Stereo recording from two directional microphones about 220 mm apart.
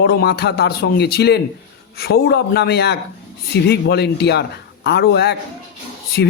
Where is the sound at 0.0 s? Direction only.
50° left (ahead or behind).